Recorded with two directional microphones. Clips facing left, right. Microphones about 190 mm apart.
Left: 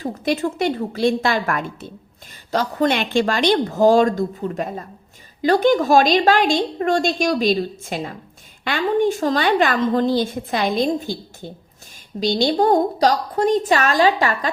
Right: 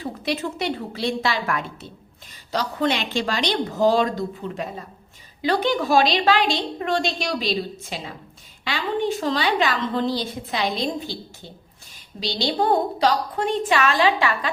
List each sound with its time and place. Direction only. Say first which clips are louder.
0.0 s a woman's voice: left 5 dB; 45° left (ahead or behind)